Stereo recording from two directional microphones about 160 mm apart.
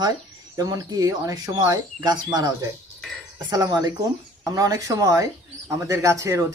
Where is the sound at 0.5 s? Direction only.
25° right (ahead or behind).